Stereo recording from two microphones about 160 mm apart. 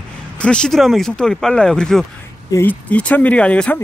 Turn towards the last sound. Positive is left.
turn(degrees=10)  # may be behind; listen again after turning